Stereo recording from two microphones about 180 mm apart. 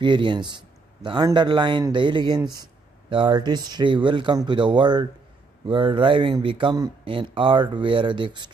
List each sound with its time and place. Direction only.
0.0 s speech: 25° right (ahead or behind)